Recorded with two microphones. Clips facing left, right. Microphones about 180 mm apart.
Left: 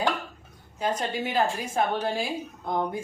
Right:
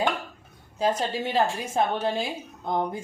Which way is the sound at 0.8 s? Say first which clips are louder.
Right 3 dB; 30° right (ahead or behind).